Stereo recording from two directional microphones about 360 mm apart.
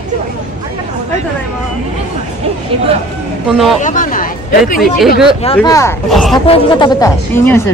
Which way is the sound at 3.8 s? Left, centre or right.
Left.